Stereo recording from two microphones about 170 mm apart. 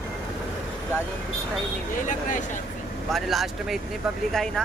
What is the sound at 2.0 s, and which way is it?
Speech, 50° left (ahead or behind).